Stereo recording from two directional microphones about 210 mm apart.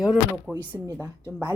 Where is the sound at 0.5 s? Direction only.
10° right (ahead or behind).